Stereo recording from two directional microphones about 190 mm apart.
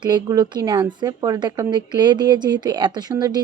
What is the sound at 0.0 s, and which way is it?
A woman's voice, 20° right (ahead or behind).